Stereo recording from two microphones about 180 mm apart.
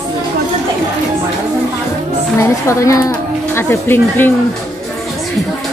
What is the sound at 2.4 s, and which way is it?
A woman's voice, 15° left (ahead or behind).